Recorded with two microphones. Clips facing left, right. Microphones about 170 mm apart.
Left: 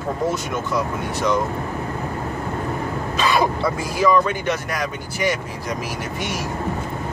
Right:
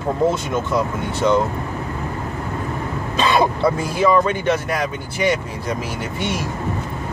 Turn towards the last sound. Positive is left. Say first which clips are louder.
# right 3 dB
turn(degrees=-25)  # may be behind; listen again after turning